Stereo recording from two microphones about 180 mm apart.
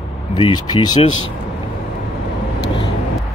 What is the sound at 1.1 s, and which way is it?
Speech, 90° left.